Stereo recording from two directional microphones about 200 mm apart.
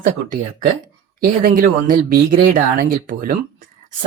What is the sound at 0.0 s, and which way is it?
Speech, 45° right (ahead or behind).